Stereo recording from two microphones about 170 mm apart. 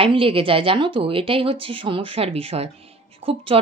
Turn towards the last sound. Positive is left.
turn(degrees=-35)  # may be behind; listen again after turning